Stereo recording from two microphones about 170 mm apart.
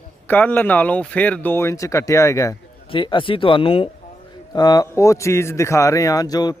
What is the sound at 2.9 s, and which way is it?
Speech, 30° left (ahead or behind).